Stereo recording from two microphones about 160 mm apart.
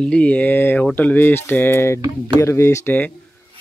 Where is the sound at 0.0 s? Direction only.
5° left (ahead or behind).